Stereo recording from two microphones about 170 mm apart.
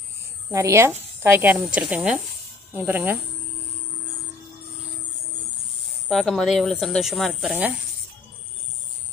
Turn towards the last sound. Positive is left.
turn(degrees=0)  # may be behind; listen again after turning